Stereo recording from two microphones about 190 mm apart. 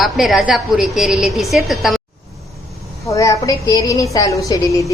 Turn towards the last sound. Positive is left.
turn(degrees=15)  # may be behind; listen again after turning